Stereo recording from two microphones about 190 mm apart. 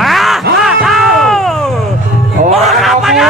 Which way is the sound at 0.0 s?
Centre (ahead or behind).